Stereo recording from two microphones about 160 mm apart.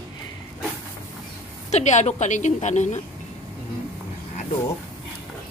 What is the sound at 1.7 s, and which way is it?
A woman's voice, 45° left (ahead or behind).